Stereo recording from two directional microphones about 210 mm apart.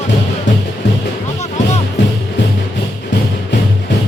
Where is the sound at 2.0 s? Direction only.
60° left (ahead or behind).